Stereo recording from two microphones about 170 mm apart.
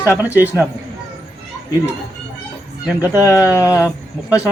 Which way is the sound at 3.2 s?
20° left (ahead or behind).